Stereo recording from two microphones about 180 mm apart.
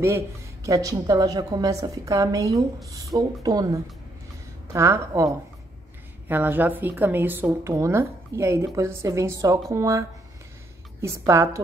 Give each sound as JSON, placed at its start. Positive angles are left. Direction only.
{"t": 0.7, "sound": "a woman's voice", "side_deg": -20}